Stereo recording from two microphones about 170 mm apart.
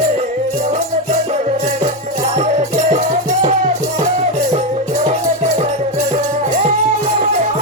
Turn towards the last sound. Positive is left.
turn(degrees=-45)  # may be behind; listen again after turning